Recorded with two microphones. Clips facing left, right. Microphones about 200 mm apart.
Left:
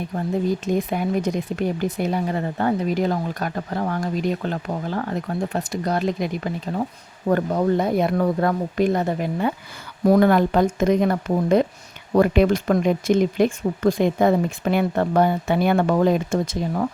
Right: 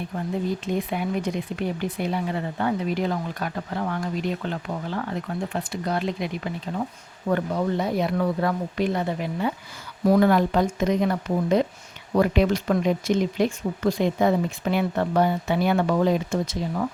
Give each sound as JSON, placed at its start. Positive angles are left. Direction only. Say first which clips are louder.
{"t": 0.6, "sound": "speech", "louder": "left 4 dB", "side_deg": 45}